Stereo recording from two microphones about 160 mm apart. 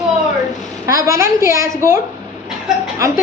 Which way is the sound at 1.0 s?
20° right (ahead or behind).